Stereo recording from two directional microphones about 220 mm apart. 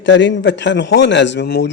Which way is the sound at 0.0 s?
55° left (ahead or behind).